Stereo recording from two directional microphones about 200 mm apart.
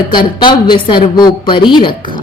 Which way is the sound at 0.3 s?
25° left (ahead or behind).